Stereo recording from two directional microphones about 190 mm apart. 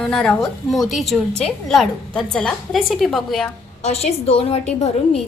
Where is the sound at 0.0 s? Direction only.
5° left (ahead or behind).